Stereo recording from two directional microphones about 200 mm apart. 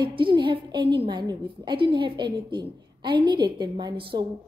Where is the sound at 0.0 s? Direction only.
25° right (ahead or behind).